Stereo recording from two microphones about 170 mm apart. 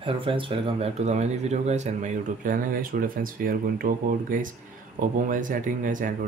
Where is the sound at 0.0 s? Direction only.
30° right (ahead or behind).